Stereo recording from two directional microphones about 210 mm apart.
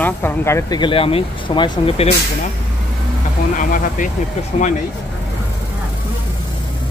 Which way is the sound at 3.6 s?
40° left (ahead or behind).